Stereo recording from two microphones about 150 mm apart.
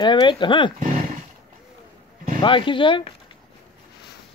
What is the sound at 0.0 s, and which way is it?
Speech, 30° left (ahead or behind).